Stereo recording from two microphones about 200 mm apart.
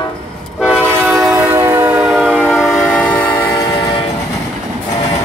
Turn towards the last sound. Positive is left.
turn(degrees=5)  # may be behind; listen again after turning